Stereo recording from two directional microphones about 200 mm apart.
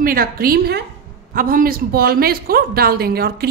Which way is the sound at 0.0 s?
45° right (ahead or behind).